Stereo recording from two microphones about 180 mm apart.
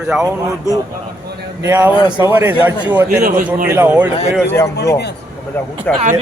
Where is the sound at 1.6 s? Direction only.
15° right (ahead or behind).